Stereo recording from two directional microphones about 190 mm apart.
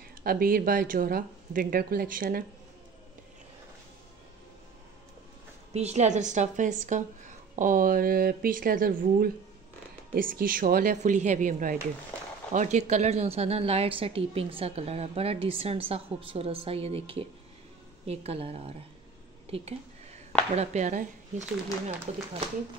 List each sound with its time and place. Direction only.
0.2 s speech: 50° right (ahead or behind)
5.7 s a woman's voice: 35° right (ahead or behind)
19.4 s whispering: 30° right (ahead or behind)
20.5 s a woman's voice: 40° right (ahead or behind)